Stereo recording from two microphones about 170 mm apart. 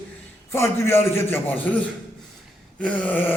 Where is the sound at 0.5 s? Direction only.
15° left (ahead or behind).